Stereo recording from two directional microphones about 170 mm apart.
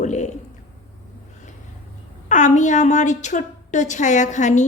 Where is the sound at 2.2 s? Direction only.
45° left (ahead or behind).